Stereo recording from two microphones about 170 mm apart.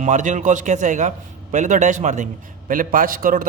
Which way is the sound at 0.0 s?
45° right (ahead or behind).